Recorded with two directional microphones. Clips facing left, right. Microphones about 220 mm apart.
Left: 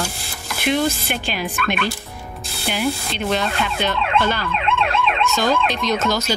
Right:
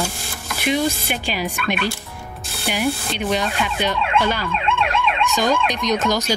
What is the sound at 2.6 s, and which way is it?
A woman's voice, 15° right (ahead or behind).